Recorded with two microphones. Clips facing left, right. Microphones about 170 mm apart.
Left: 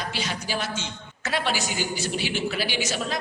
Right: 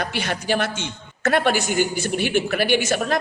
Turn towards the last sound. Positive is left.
turn(degrees=-55)  # may be behind; listen again after turning